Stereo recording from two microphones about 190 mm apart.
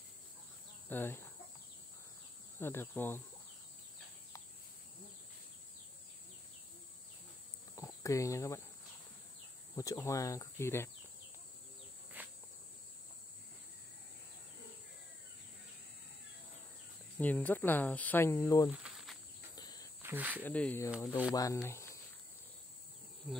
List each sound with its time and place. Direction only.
0.8 s speech: 10° left (ahead or behind)
2.6 s speech: 10° left (ahead or behind)
7.7 s cricket: 15° left (ahead or behind)
9.8 s speech: 15° left (ahead or behind)
12.2 s cricket: 10° right (ahead or behind)
17.2 s speech: 10° left (ahead or behind)
18.7 s insect: 5° right (ahead or behind)
19.5 s cricket: 20° left (ahead or behind)
20.0 s speech: 10° right (ahead or behind)
20.4 s speech: 10° left (ahead or behind)
23.3 s speech: centre (ahead or behind)